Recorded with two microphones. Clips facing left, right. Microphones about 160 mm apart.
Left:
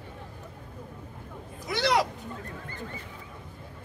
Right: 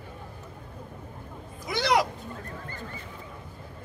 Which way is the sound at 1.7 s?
15° right (ahead or behind).